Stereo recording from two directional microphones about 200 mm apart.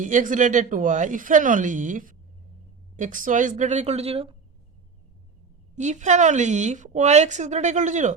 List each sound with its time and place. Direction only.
0.0 s a woman's voice: 40° right (ahead or behind)
5.7 s a woman's voice: 35° right (ahead or behind)